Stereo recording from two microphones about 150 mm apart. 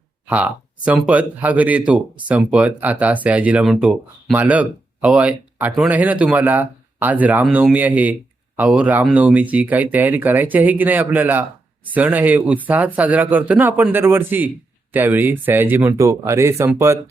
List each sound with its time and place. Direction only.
0.3 s speech: 10° right (ahead or behind)